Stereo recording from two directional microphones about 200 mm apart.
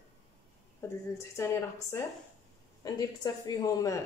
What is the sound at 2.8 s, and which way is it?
A woman's voice, 15° left (ahead or behind).